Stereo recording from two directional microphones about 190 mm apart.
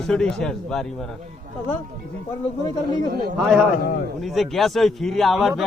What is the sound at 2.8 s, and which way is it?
Speech, 55° right (ahead or behind).